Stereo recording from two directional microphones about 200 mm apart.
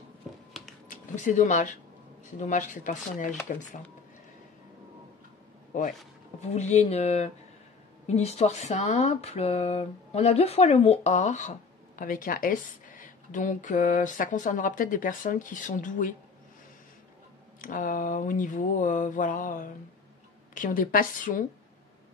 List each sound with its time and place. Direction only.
0.8 s a woman's voice: 40° left (ahead or behind)
5.7 s a woman's voice: 40° left (ahead or behind)
17.6 s a woman's voice: 45° left (ahead or behind)